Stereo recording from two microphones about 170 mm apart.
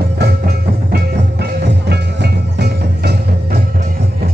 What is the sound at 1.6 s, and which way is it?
Music, 80° right.